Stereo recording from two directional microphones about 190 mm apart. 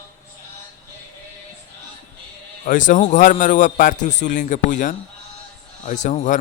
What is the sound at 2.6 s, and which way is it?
A man's voice, 45° left (ahead or behind).